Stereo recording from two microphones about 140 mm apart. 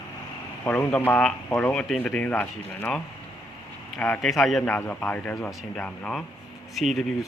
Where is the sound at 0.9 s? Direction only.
15° left (ahead or behind).